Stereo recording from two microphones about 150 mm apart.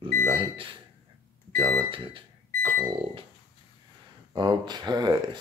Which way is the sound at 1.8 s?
35° right (ahead or behind).